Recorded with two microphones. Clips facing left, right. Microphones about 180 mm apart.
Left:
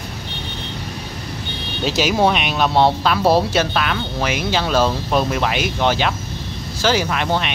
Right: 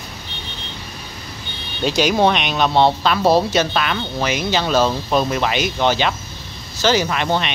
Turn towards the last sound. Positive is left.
turn(degrees=0)  # may be behind; listen again after turning